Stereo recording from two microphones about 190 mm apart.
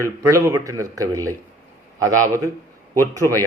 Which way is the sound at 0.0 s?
15° right (ahead or behind).